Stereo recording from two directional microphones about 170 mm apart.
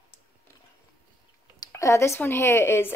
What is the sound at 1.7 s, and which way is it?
A woman's voice, 15° left (ahead or behind).